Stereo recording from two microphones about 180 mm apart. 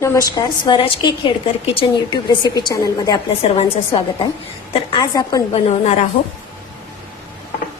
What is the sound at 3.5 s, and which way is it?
Speech, 30° left (ahead or behind).